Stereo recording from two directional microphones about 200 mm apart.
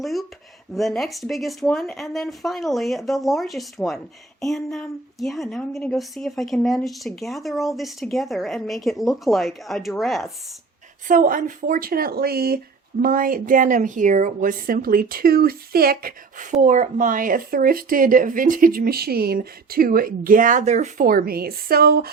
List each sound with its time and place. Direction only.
0.0 s speech: centre (ahead or behind)
11.1 s a woman's voice: 45° right (ahead or behind)